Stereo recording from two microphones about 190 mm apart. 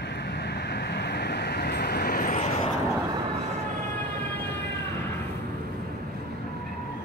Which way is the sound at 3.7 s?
40° right (ahead or behind).